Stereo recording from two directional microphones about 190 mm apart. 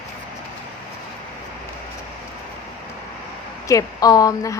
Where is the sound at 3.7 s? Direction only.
20° left (ahead or behind).